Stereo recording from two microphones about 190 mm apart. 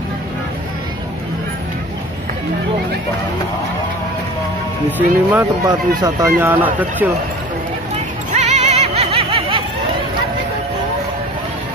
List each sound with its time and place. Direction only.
4.9 s speech: 10° right (ahead or behind)
8.4 s music: 35° right (ahead or behind)